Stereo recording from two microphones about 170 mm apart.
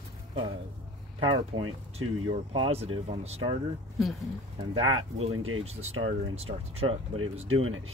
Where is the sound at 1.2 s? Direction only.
30° right (ahead or behind).